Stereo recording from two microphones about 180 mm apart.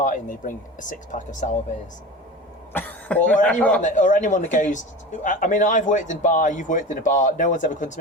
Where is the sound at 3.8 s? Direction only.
45° left (ahead or behind).